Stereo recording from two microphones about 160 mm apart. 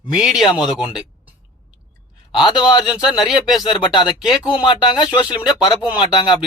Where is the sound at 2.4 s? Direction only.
25° left (ahead or behind).